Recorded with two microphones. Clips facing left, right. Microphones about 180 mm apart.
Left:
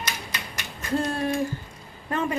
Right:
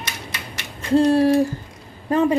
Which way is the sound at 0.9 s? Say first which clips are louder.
Right 10 dB; 35° right (ahead or behind).